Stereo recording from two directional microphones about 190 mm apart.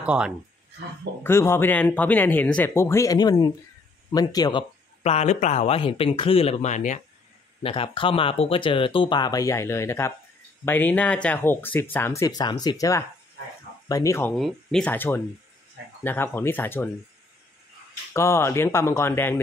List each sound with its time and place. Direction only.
0.0 s speech: 5° right (ahead or behind)
1.2 s speech: 15° left (ahead or behind); by 7.0 s 40° left (ahead or behind)
7.6 s speech: 30° left (ahead or behind)
14.4 s speech: 5° left (ahead or behind)
18.1 s speech: 15° left (ahead or behind)